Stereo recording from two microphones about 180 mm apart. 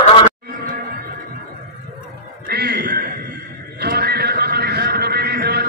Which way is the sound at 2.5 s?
60° right (ahead or behind).